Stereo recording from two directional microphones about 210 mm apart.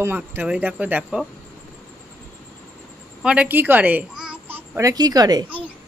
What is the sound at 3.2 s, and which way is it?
Speech, 5° right (ahead or behind).